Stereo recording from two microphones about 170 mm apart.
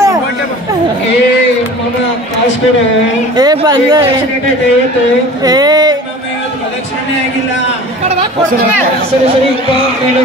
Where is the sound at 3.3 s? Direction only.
25° right (ahead or behind).